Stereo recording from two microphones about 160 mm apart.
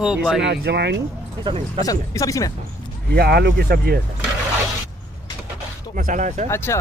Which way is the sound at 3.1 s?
80° right.